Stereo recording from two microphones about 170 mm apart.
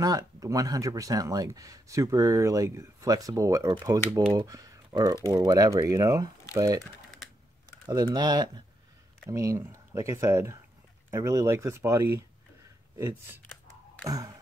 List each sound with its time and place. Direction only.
0.0 s speech: 20° right (ahead or behind)
7.9 s speech: 25° right (ahead or behind)